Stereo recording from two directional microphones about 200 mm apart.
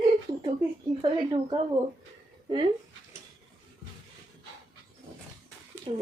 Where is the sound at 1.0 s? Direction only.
25° right (ahead or behind).